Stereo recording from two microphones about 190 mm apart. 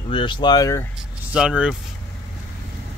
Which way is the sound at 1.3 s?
5° right (ahead or behind).